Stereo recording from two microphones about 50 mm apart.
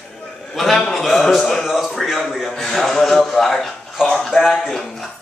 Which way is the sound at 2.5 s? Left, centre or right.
Centre.